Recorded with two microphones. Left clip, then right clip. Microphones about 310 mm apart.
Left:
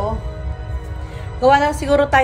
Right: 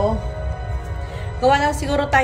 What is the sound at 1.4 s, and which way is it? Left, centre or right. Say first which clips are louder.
Speech: left 3 dB; left.